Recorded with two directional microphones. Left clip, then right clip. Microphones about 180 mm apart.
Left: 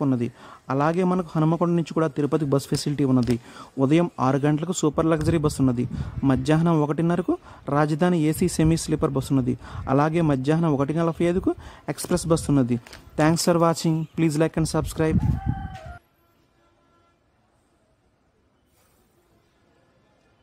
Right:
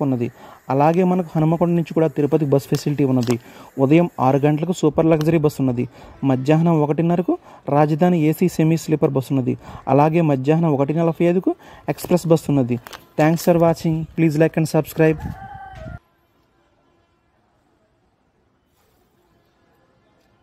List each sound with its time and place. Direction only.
0.0 s speech: centre (ahead or behind)
14.7 s speech: 15° right (ahead or behind)
15.2 s speech: 35° right (ahead or behind)